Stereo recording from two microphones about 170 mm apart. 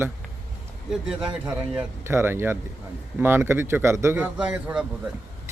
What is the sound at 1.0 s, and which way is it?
A man's voice, 5° right (ahead or behind).